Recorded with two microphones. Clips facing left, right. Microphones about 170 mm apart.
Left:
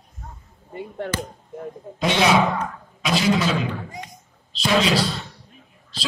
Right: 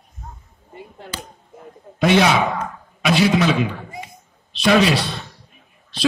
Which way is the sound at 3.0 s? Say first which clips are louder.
Right 4 dB; 65° right (ahead or behind).